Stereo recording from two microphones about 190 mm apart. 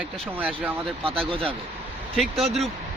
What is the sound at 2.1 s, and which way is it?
Speech, centre (ahead or behind).